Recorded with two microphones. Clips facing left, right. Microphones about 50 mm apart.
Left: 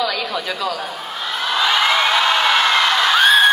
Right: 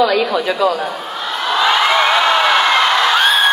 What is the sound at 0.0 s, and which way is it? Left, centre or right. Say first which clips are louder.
Speech: right 8 dB; centre.